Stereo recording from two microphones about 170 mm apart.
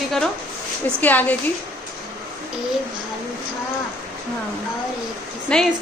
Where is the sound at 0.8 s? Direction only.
10° left (ahead or behind).